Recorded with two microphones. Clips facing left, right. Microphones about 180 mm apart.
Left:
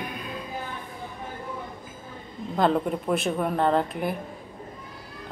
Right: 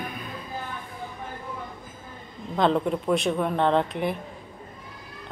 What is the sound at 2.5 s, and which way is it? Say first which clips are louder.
Speech: right 1 dB; 5° left (ahead or behind).